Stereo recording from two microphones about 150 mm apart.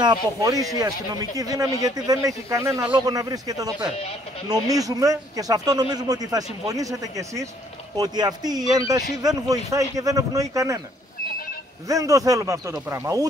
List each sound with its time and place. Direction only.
0.0 s speech: 25° right (ahead or behind)
11.9 s speech: 20° right (ahead or behind)